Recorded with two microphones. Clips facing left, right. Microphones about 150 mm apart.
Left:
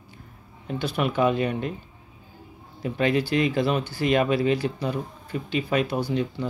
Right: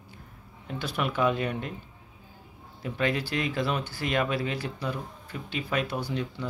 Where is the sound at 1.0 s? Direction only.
5° left (ahead or behind).